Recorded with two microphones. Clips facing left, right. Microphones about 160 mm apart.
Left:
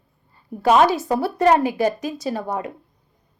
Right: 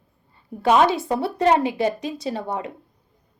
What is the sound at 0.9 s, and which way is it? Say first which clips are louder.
A woman's voice: left 2 dB; 25° right (ahead or behind).